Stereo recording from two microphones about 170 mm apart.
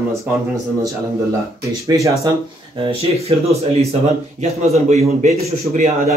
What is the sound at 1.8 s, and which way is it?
Speech, 20° right (ahead or behind).